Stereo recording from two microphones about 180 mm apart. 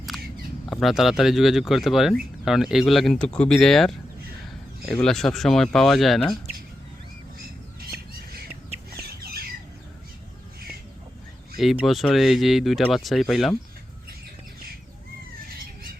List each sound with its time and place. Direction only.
0.7 s speech: centre (ahead or behind)
5.0 s speech: 5° left (ahead or behind)
8.9 s chicken: 60° right (ahead or behind)
11.6 s speech: centre (ahead or behind)